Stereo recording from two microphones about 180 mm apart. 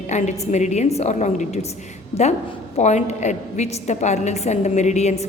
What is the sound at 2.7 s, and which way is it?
A woman's voice, 40° left (ahead or behind).